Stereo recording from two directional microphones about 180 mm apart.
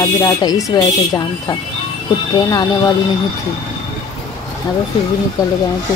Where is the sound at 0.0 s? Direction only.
20° left (ahead or behind).